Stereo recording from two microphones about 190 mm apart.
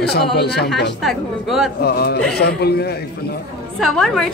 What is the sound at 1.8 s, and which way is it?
A man's voice, 55° left (ahead or behind).